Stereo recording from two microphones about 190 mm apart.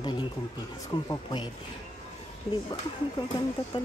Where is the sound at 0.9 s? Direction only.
20° left (ahead or behind).